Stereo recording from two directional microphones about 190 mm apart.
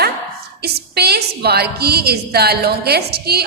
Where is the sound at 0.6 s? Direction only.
55° right (ahead or behind).